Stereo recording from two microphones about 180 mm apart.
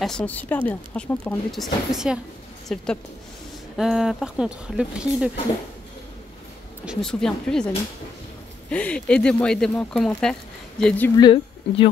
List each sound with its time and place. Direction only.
0.0 s speech: 5° left (ahead or behind)
6.9 s speech: 5° left (ahead or behind)
11.1 s speech: 25° left (ahead or behind)